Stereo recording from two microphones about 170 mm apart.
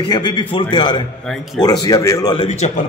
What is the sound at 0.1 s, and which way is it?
A man's voice, 25° left (ahead or behind).